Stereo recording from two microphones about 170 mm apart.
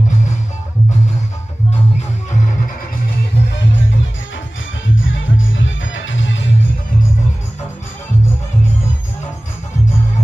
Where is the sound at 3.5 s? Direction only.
90° left.